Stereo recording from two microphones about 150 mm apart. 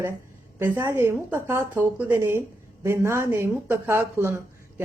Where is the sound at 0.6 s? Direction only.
15° right (ahead or behind).